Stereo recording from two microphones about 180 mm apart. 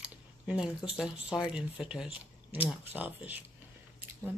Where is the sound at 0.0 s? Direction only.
5° right (ahead or behind).